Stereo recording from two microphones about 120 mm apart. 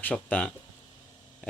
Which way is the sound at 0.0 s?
10° left (ahead or behind).